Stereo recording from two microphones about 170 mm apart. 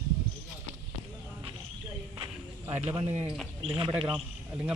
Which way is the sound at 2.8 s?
30° right (ahead or behind).